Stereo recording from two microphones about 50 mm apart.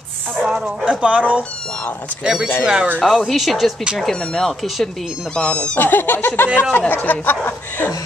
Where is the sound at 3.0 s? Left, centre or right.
Centre.